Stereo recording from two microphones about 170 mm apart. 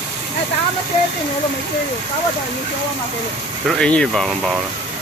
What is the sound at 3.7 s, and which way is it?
Speech, 5° left (ahead or behind).